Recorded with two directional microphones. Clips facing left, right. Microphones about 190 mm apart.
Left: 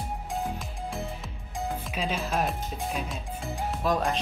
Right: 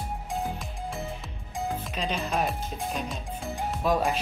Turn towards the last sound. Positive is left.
turn(degrees=0)  # may be behind; listen again after turning